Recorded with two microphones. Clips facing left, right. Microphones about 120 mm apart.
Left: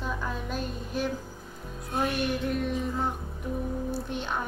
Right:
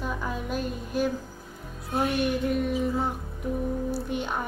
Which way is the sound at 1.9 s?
5° right (ahead or behind).